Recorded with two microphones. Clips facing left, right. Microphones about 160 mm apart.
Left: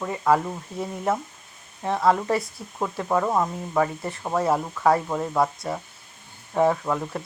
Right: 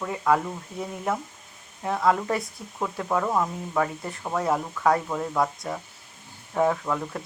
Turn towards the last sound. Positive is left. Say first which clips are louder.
# left 2 dB
turn(degrees=10)  # may be behind; listen again after turning